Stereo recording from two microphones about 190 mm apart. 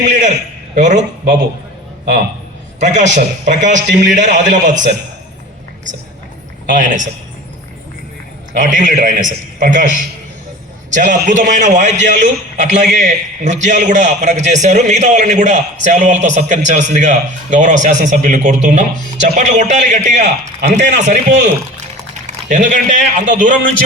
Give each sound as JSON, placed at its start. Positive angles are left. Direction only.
{"t": 0.0, "sound": "a sound", "side_deg": -40}
{"t": 0.8, "sound": "a man's voice", "side_deg": -40}
{"t": 2.8, "sound": "a man's voice", "side_deg": -40}
{"t": 6.7, "sound": "a man's voice", "side_deg": -45}
{"t": 8.5, "sound": "a man's voice", "side_deg": -40}
{"t": 22.4, "sound": "a man's voice", "side_deg": -40}